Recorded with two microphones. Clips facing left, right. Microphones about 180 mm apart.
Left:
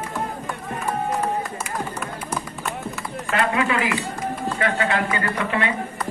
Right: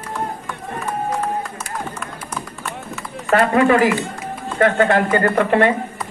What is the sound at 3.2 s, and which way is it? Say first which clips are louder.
Speech: right 8 dB; 45° right (ahead or behind).